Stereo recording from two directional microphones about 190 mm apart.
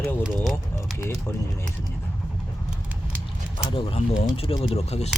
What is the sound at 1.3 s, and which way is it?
Speech, 15° left (ahead or behind).